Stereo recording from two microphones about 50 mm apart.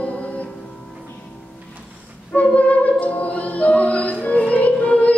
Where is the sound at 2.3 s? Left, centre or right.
Left.